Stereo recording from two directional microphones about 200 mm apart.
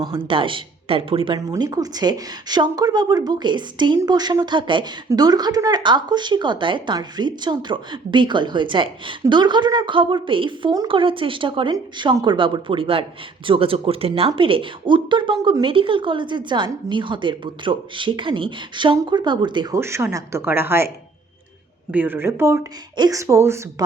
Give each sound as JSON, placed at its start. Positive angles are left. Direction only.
{"t": 0.0, "sound": "speech", "side_deg": -25}
{"t": 21.9, "sound": "speech", "side_deg": -10}